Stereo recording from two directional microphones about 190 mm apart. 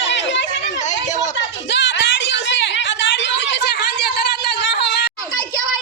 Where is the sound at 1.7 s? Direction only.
75° left (ahead or behind).